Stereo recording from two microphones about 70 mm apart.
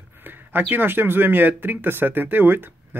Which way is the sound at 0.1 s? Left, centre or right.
Right.